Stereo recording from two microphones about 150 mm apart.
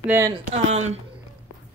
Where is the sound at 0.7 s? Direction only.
50° right (ahead or behind).